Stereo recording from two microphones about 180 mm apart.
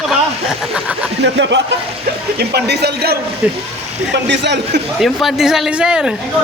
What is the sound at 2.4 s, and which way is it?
Speech, 65° right (ahead or behind).